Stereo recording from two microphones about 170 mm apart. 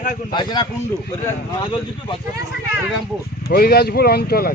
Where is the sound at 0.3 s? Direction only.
25° left (ahead or behind).